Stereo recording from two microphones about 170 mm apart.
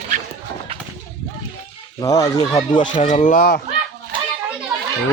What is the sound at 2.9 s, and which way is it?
Speech, 45° left (ahead or behind).